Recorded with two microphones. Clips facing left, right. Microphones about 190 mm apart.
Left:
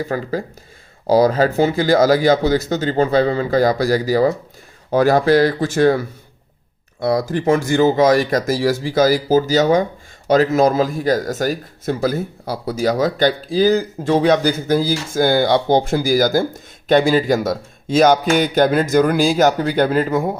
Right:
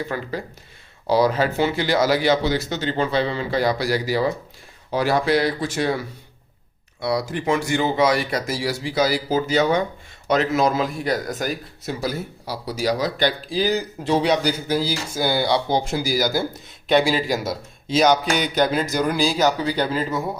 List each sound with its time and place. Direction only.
0.0 s a man's voice: 40° left (ahead or behind)
7.0 s a man's voice: 50° left (ahead or behind)